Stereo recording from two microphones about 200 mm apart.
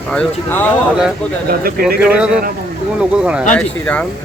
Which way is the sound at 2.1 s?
5° right (ahead or behind).